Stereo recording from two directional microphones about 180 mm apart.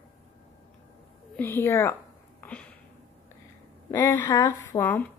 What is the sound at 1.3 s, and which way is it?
Speech, 10° left (ahead or behind).